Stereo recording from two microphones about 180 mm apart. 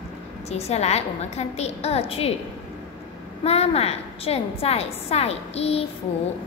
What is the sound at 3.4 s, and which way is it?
A woman's voice, 35° left (ahead or behind).